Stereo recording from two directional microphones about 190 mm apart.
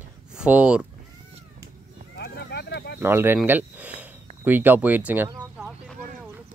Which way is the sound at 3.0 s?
10° right (ahead or behind).